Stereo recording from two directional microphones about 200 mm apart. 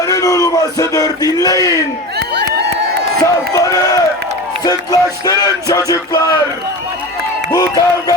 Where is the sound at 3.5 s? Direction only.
15° left (ahead or behind).